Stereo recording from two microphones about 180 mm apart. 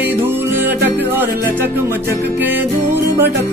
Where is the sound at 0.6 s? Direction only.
10° right (ahead or behind).